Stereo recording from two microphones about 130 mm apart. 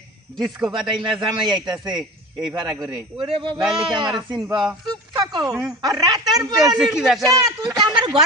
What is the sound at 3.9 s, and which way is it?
Speech, 35° right (ahead or behind).